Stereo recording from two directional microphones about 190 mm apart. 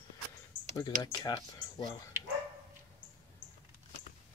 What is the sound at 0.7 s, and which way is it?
Speech, 20° left (ahead or behind).